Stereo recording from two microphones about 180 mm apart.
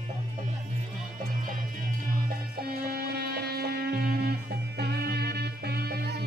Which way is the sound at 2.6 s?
60° right (ahead or behind).